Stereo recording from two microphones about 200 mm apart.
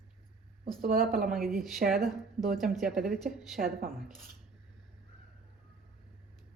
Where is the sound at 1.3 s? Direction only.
Centre (ahead or behind).